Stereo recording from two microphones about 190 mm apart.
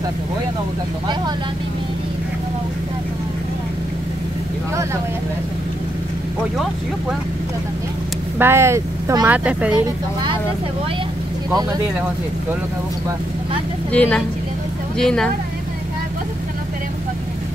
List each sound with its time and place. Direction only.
8.4 s speech: 15° right (ahead or behind)
13.9 s speech: 5° left (ahead or behind)